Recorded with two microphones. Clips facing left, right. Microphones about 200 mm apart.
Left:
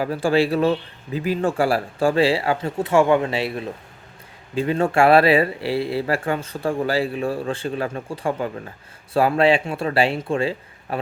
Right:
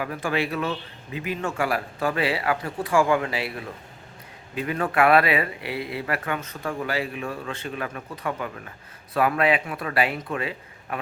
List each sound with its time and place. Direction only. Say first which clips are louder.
0.0 s a man's voice: left 7 dB; 30° left (ahead or behind)